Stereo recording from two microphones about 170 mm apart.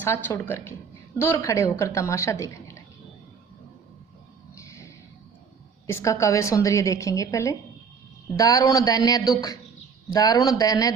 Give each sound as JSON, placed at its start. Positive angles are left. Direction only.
{"t": 0.0, "sound": "a woman's voice", "side_deg": 15}
{"t": 4.5, "sound": "a sound", "side_deg": 15}
{"t": 5.9, "sound": "a woman's voice", "side_deg": 15}